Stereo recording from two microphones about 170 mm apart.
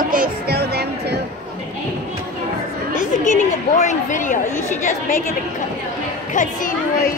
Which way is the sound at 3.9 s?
50° left (ahead or behind).